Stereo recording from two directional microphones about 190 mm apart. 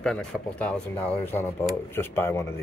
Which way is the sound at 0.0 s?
5° left (ahead or behind).